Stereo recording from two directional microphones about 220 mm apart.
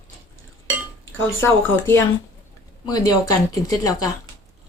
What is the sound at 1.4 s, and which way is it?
Speech, 10° left (ahead or behind).